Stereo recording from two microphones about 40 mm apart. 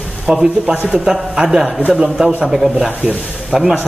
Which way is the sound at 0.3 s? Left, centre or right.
Centre.